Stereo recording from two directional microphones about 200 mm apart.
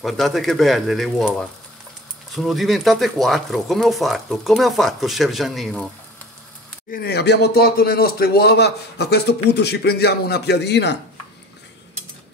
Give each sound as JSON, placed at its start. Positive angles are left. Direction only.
{"t": 0.0, "sound": "speech", "side_deg": 0}
{"t": 6.9, "sound": "speech", "side_deg": 50}